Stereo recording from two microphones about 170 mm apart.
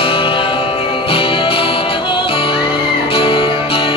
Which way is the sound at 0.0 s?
30° left (ahead or behind).